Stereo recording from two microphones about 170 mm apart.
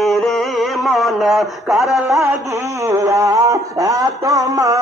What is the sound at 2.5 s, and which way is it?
Speech, 15° right (ahead or behind).